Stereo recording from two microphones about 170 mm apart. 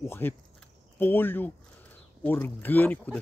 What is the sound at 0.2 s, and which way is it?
Speech, 10° left (ahead or behind).